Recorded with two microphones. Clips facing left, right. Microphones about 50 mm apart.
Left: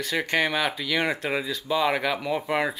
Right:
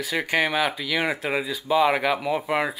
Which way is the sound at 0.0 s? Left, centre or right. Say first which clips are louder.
Right 1 dB; centre.